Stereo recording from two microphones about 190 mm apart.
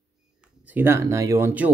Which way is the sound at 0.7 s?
10° right (ahead or behind).